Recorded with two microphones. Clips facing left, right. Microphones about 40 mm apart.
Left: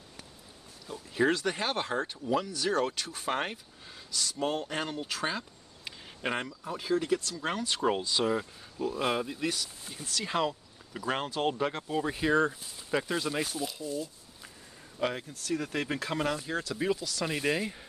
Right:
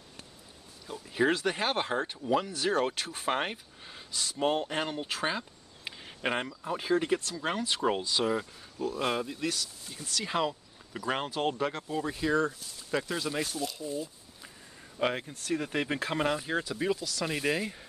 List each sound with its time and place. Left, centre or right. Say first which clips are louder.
0.8 s speech: even; centre
5.9 s a sound: right 2 dB; centre
6.6 s speech: right 2 dB; right
7.4 s speech: even; centre
13.1 s speech: left 1 dB; centre
13.8 s speech: even; centre; by 15.6 s right
15.6 s speech: right 1 dB; centre
16.7 s speech: even; centre